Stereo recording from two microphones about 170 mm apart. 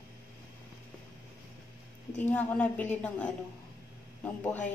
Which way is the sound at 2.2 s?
10° left (ahead or behind).